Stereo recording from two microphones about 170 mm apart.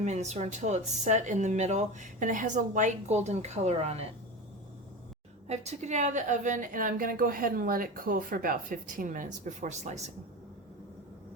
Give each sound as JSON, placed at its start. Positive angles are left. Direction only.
{"t": 0.0, "sound": "a woman's voice", "side_deg": -40}
{"t": 5.5, "sound": "a woman's voice", "side_deg": -40}